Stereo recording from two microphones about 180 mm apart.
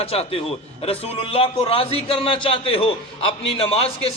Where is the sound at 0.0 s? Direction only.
35° left (ahead or behind).